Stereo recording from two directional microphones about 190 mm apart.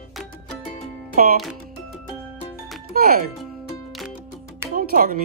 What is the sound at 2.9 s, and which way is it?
Speech, 50° right (ahead or behind).